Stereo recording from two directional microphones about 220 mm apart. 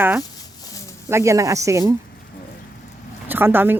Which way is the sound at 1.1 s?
15° right (ahead or behind).